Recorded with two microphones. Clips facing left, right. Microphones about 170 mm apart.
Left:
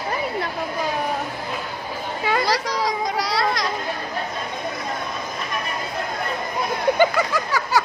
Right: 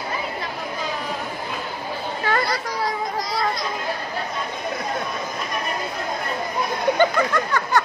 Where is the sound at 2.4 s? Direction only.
90° left.